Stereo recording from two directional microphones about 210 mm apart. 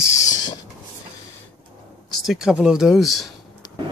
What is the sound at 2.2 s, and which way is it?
Speech, 5° right (ahead or behind).